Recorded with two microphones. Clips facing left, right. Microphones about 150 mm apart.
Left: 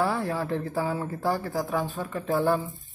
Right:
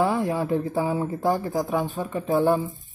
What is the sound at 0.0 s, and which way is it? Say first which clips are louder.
Speech: right 4 dB; 15° right (ahead or behind).